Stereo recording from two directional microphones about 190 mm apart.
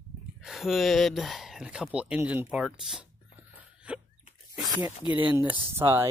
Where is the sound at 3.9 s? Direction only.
5° right (ahead or behind).